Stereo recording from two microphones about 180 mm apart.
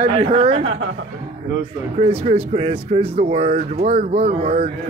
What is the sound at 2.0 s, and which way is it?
Speech, 35° right (ahead or behind).